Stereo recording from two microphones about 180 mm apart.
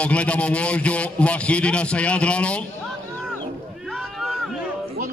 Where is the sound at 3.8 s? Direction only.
Centre (ahead or behind).